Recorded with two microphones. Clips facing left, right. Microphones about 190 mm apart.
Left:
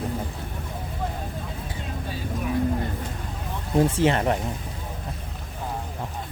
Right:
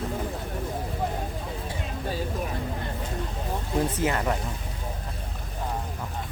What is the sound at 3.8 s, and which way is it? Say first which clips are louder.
Speech: left 6 dB; 25° left (ahead or behind).